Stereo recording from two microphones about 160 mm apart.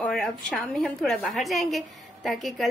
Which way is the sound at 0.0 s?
5° left (ahead or behind).